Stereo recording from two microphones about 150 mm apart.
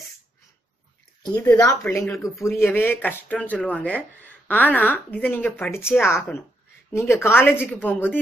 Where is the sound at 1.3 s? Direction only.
20° left (ahead or behind).